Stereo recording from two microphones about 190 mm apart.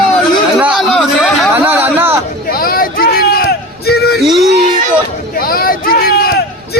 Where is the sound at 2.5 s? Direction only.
50° left (ahead or behind).